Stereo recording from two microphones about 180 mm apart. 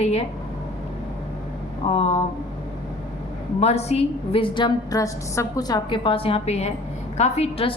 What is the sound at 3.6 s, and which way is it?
A woman's voice, 35° left (ahead or behind).